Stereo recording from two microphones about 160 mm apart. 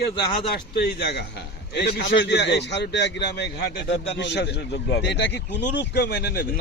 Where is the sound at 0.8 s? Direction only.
90° left.